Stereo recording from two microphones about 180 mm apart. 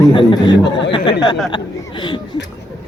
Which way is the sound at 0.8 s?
30° left (ahead or behind).